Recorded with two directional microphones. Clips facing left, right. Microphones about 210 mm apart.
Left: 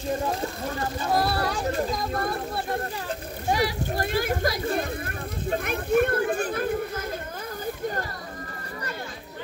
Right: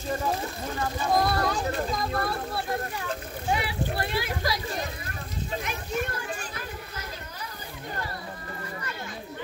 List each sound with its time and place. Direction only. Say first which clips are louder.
1.1 s speech: even; 10° left (ahead or behind)
3.4 s speech: left 3 dB; 40° left (ahead or behind)